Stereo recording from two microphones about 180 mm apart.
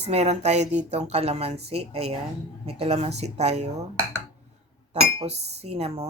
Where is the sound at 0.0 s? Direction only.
35° right (ahead or behind).